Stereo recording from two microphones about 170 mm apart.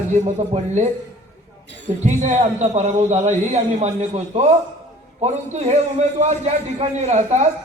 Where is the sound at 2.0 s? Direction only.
45° right (ahead or behind).